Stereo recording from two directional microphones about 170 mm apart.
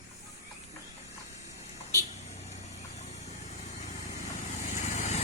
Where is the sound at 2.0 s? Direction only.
40° left (ahead or behind).